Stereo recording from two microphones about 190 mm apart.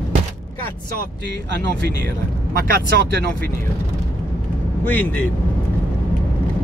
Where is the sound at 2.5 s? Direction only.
55° right (ahead or behind).